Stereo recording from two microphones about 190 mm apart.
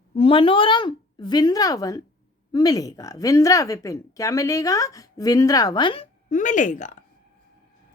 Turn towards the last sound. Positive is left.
turn(degrees=40)  # may be behind; listen again after turning